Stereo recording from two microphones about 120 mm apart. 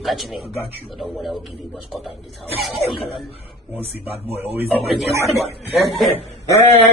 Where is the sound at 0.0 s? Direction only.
Centre (ahead or behind).